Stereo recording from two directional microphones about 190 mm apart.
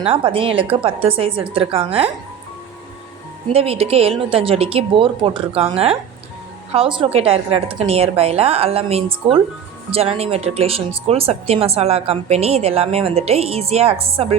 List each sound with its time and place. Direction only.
0.0 s a woman's voice: 30° right (ahead or behind)
3.5 s speech: 30° right (ahead or behind)